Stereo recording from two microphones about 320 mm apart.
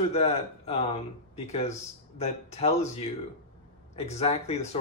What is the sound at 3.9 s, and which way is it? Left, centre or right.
Speech, centre.